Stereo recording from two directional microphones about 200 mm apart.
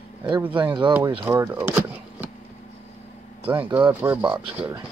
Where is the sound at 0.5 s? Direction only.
25° right (ahead or behind).